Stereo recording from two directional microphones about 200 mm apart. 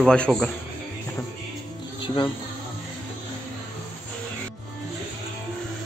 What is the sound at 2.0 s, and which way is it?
Insect, 25° left (ahead or behind).